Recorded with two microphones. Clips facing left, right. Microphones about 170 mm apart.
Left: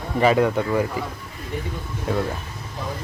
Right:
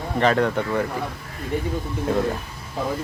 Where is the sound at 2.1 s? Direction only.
Centre (ahead or behind).